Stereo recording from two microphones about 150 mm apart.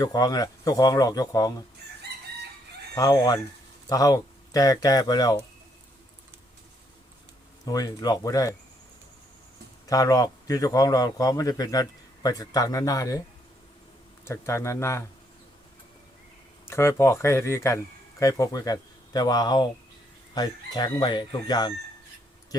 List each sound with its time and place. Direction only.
0.0 s a man's voice: 25° left (ahead or behind)
2.9 s a man's voice: 25° left (ahead or behind)
7.6 s a man's voice: 25° left (ahead or behind)
9.8 s a man's voice: 25° left (ahead or behind)
14.3 s speech: 20° left (ahead or behind)
16.6 s a man's voice: 20° left (ahead or behind)